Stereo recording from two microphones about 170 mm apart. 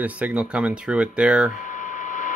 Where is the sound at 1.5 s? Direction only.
50° left (ahead or behind).